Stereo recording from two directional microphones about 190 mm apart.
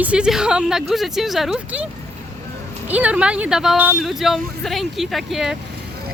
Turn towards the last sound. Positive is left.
turn(degrees=0)  # may be behind; listen again after turning